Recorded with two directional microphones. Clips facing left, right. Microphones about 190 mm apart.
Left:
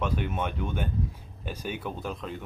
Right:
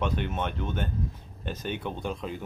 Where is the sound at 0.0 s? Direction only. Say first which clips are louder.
Even; 5° left (ahead or behind).